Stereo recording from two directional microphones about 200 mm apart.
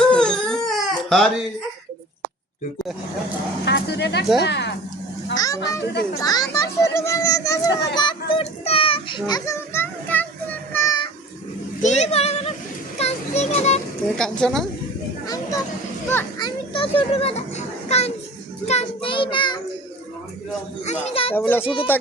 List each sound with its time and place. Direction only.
0.1 s crying: 5° left (ahead or behind)
3.7 s speech: 60° left (ahead or behind)
5.3 s a child's voice: 20° left (ahead or behind)
10.7 s child singing: 15° left (ahead or behind)
11.8 s speech: 35° left (ahead or behind)
13.0 s children playing: 35° left (ahead or behind)
14.2 s a woman's voice: 5° left (ahead or behind)
15.3 s a sound: 15° left (ahead or behind)
16.0 s a child's voice: 10° left (ahead or behind)
16.7 s a child's voice: 25° left (ahead or behind)
20.8 s a child's voice: 35° left (ahead or behind)
21.3 s a child's voice: 10° left (ahead or behind)
21.6 s a child's voice: 25° left (ahead or behind)